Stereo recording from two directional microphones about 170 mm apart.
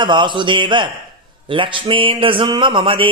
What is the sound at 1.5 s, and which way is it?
Speech, 30° right (ahead or behind).